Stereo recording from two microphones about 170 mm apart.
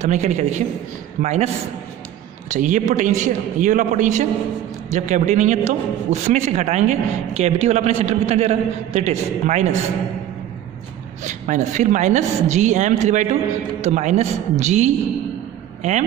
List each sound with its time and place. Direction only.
0.0 s a woman's voice: 45° right (ahead or behind)
2.5 s a woman's voice: 50° right (ahead or behind)
11.2 s a woman's voice: 45° right (ahead or behind)